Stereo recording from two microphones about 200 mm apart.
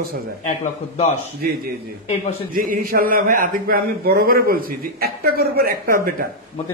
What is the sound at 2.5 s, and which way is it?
Speech, 45° right (ahead or behind).